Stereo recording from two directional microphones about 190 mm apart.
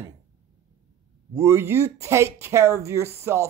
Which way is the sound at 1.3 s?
15° right (ahead or behind).